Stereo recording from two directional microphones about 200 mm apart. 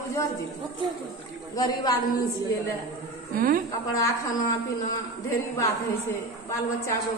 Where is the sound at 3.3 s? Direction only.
45° right (ahead or behind).